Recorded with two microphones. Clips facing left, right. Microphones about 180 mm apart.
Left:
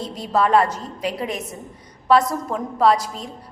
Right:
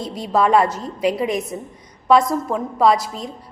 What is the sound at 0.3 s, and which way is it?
A woman's voice, 10° right (ahead or behind).